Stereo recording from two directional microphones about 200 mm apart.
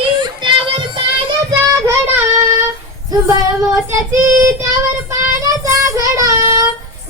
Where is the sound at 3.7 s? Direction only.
15° right (ahead or behind).